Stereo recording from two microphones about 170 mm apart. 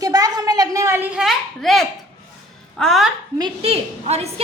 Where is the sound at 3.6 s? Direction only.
35° right (ahead or behind).